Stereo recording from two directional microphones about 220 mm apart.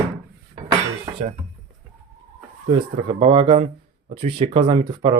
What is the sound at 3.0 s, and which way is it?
Speech, 25° right (ahead or behind).